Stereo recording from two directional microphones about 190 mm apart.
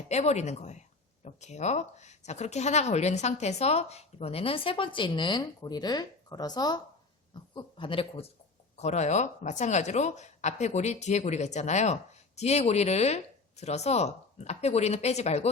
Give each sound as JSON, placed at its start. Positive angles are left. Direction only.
{"t": 0.1, "sound": "speech", "side_deg": 35}